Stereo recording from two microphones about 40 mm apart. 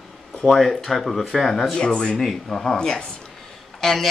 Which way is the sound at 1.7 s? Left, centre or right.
Left.